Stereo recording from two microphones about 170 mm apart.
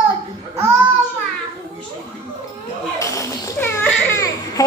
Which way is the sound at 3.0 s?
20° left (ahead or behind).